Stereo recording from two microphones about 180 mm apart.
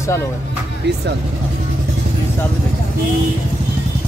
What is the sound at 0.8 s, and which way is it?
Speech, 70° right (ahead or behind).